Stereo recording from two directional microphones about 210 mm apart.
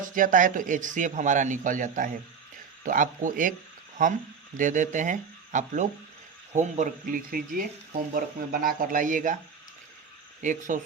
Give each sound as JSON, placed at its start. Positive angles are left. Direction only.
{"t": 0.0, "sound": "speech", "side_deg": -40}
{"t": 4.5, "sound": "speech", "side_deg": -40}
{"t": 10.4, "sound": "speech", "side_deg": -35}